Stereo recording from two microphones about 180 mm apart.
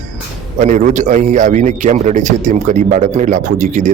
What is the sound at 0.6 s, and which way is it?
A man's voice, 45° right (ahead or behind).